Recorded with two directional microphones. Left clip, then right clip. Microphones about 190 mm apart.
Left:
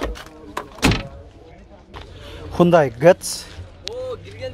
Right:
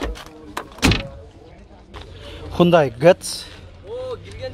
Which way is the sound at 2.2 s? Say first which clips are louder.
Even; centre (ahead or behind).